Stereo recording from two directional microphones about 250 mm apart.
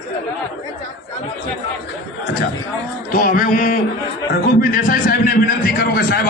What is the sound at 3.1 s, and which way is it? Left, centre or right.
A man's voice, left.